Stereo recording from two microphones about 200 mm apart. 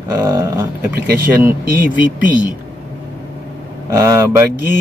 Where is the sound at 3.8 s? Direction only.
15° right (ahead or behind).